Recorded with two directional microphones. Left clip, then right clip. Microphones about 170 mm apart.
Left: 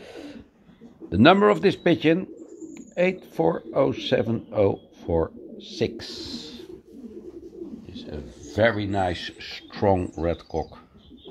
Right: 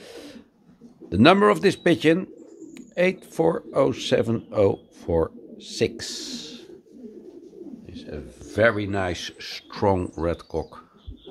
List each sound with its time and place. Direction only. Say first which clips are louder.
0.1 s a sound: left 2 dB; 10° right (ahead or behind)
1.1 s speech: even; 20° right (ahead or behind)
7.9 s a man's voice: even; 10° right (ahead or behind)